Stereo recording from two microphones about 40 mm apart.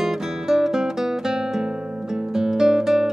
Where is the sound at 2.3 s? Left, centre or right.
Centre.